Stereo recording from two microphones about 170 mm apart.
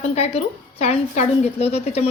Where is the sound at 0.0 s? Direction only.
40° left (ahead or behind).